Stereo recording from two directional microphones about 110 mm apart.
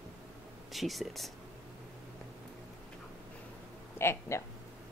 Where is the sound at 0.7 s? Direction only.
Centre (ahead or behind).